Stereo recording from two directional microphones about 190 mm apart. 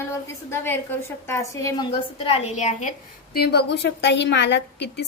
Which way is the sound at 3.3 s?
60° left (ahead or behind).